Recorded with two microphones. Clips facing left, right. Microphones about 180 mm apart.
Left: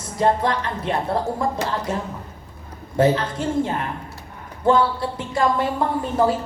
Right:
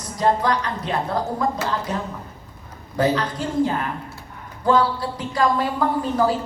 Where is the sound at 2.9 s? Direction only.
25° left (ahead or behind).